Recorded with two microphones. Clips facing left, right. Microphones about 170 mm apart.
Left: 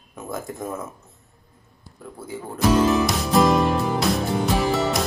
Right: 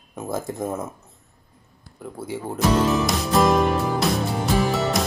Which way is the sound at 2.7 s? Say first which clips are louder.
Left 2 dB; centre (ahead or behind).